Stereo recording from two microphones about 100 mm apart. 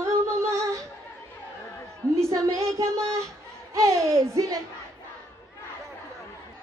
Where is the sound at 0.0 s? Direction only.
30° right (ahead or behind).